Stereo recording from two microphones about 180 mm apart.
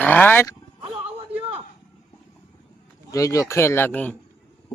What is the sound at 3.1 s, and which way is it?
Speech, 20° left (ahead or behind).